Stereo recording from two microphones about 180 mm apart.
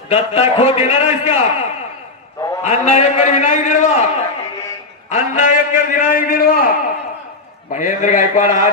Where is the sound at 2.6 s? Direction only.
40° left (ahead or behind).